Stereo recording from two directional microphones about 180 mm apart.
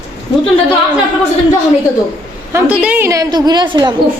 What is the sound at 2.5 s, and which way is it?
Speech, 5° right (ahead or behind).